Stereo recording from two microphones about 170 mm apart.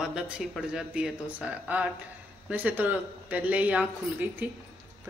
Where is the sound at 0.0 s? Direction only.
5° right (ahead or behind).